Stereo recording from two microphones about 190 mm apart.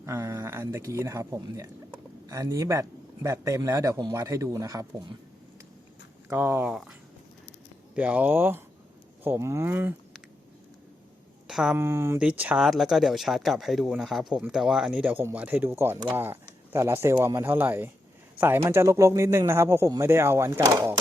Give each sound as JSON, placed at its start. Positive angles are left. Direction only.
{"t": 0.0, "sound": "speech", "side_deg": -15}
{"t": 6.2, "sound": "speech", "side_deg": -10}
{"t": 7.9, "sound": "speech", "side_deg": -5}
{"t": 11.4, "sound": "speech", "side_deg": -5}
{"t": 11.8, "sound": "speech", "side_deg": -15}